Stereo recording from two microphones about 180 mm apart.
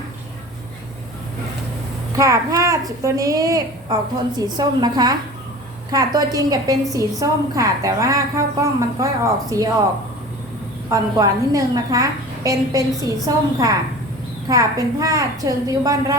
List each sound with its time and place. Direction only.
2.1 s a woman's voice: 15° right (ahead or behind)
10.8 s a woman's voice: 20° right (ahead or behind)